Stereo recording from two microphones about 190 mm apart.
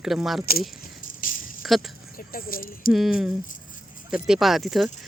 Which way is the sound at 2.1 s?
50° left (ahead or behind).